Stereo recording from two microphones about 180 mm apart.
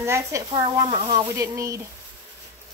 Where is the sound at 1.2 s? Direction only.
15° right (ahead or behind).